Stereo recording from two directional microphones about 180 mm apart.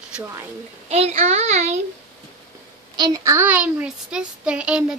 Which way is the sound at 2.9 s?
20° right (ahead or behind).